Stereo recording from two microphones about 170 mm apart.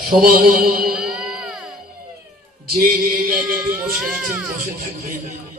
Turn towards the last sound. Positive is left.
turn(degrees=-5)  # may be behind; listen again after turning